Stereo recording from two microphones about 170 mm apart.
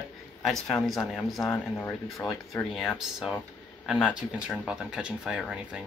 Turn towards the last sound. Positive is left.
turn(degrees=-5)  # may be behind; listen again after turning